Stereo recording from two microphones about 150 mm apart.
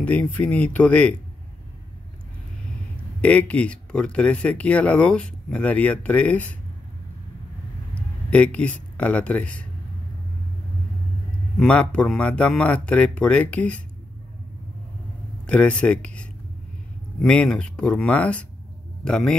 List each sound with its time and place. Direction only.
0.0 s speech: 10° left (ahead or behind)
3.2 s speech: 10° left (ahead or behind)
7.9 s speech: 10° left (ahead or behind)
11.5 s speech: 5° left (ahead or behind)
15.4 s speech: 10° left (ahead or behind)